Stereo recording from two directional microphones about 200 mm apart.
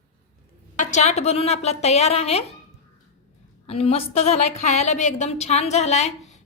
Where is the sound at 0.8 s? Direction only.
35° left (ahead or behind).